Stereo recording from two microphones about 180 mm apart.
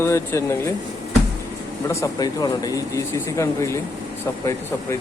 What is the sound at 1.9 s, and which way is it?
A man's voice, 20° left (ahead or behind).